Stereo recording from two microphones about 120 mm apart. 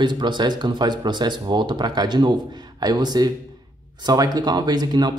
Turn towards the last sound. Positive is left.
turn(degrees=-35)  # may be behind; listen again after turning